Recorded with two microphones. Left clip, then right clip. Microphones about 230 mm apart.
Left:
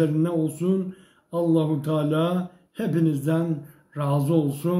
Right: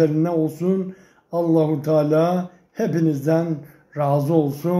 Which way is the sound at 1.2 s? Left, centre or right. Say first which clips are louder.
Right 4 dB; centre.